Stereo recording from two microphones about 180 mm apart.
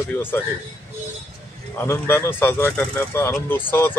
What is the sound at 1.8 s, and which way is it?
Speech, 10° left (ahead or behind).